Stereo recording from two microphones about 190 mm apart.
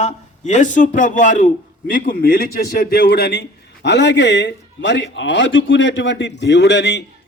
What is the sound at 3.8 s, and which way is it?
Speech, 65° left (ahead or behind).